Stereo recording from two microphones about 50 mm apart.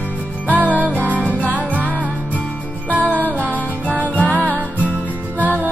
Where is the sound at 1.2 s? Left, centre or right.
Right.